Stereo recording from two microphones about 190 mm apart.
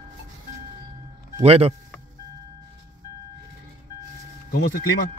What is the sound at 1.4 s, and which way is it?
Speech, 30° right (ahead or behind).